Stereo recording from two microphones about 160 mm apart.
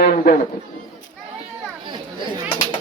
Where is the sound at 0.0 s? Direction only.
65° left (ahead or behind).